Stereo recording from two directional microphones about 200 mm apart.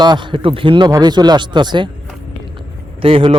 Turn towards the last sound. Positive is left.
turn(degrees=-25)  # may be behind; listen again after turning